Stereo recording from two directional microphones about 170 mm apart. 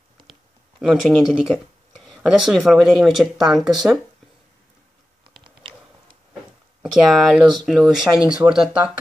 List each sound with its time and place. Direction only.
0.3 s speech: centre (ahead or behind)
5.4 s a sound: 30° right (ahead or behind)
6.8 s speech: centre (ahead or behind)